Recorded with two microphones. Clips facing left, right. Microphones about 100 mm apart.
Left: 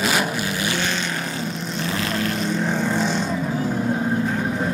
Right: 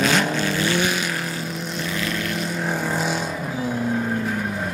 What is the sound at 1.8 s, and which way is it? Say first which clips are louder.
Vehicle: left 3 dB; 35° left (ahead or behind).